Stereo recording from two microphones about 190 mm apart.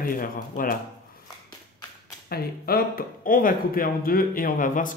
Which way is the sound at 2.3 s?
50° left (ahead or behind).